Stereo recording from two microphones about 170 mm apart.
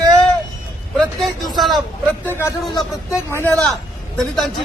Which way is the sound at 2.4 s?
15° left (ahead or behind).